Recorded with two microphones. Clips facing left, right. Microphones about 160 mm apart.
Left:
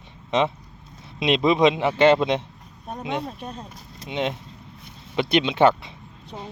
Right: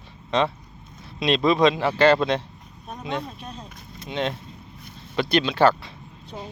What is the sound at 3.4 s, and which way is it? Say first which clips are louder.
Speech: left 3 dB; 55° left (ahead or behind).